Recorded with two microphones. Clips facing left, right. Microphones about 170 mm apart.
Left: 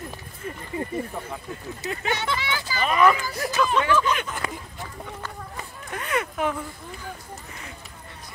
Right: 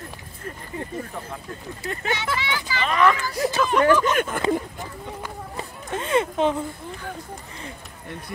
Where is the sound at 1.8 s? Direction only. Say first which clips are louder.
Even; centre (ahead or behind).